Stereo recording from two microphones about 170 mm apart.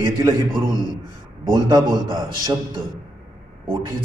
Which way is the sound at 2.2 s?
25° right (ahead or behind).